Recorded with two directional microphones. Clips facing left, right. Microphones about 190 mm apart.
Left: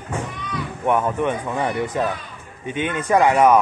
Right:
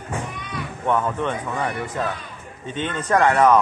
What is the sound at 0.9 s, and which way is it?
Speech, 15° left (ahead or behind).